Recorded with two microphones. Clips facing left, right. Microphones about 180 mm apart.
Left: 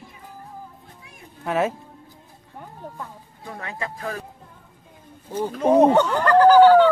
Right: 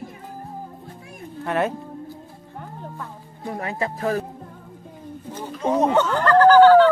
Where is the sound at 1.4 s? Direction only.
Centre (ahead or behind).